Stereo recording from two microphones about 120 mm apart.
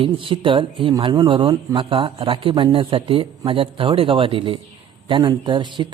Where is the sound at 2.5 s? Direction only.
35° right (ahead or behind).